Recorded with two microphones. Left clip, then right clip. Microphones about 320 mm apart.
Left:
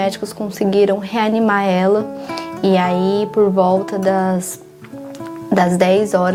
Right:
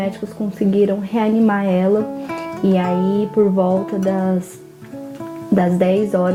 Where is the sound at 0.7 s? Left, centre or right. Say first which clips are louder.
Left 3 dB; left.